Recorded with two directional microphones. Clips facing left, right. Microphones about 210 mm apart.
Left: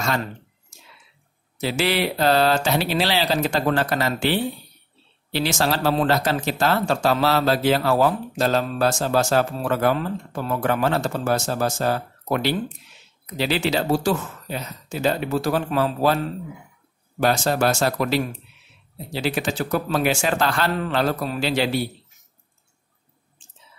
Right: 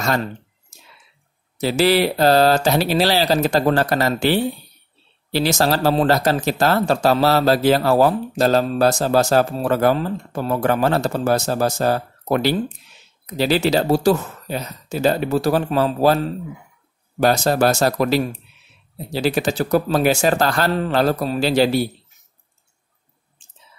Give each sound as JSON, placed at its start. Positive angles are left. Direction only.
{"t": 0.0, "sound": "speech", "side_deg": -40}
{"t": 1.6, "sound": "speech", "side_deg": -40}
{"t": 17.2, "sound": "speech", "side_deg": -40}